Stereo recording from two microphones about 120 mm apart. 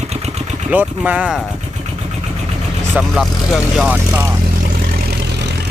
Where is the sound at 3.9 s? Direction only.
20° right (ahead or behind).